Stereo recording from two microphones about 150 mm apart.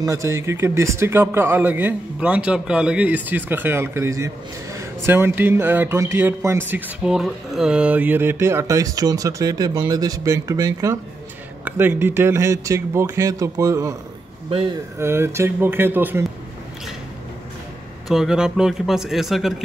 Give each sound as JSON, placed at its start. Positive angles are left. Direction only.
{"t": 0.0, "sound": "speech", "side_deg": -20}
{"t": 7.0, "sound": "speech", "side_deg": 0}
{"t": 15.0, "sound": "speech", "side_deg": -15}
{"t": 18.0, "sound": "a man's voice", "side_deg": -5}